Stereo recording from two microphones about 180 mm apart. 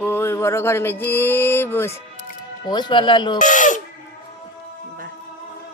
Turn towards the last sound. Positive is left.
turn(degrees=45)  # may be behind; listen again after turning